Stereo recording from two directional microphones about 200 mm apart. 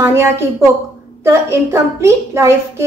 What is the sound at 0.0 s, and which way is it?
A woman's voice, 15° right (ahead or behind).